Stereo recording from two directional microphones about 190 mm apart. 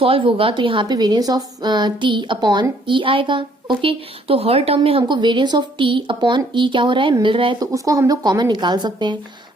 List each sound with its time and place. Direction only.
0.0 s a woman's voice: 30° right (ahead or behind)